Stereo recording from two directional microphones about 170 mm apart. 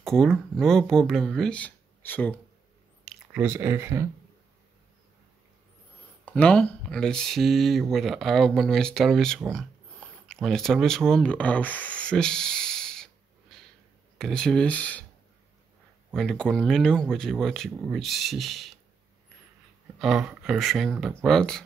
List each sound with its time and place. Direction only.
0.0 s speech: 5° left (ahead or behind)
3.1 s speech: 10° right (ahead or behind)
6.2 s speech: 5° left (ahead or behind)
14.1 s speech: 5° left (ahead or behind)
16.2 s speech: 5° left (ahead or behind)
20.0 s speech: centre (ahead or behind)